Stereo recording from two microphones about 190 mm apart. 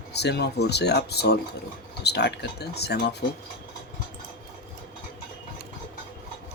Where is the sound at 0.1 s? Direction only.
60° left (ahead or behind).